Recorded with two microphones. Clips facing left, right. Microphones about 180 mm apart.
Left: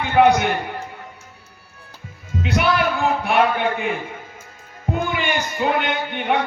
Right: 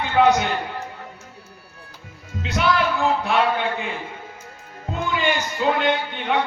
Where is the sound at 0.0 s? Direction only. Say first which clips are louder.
Left 2 dB; 15° left (ahead or behind).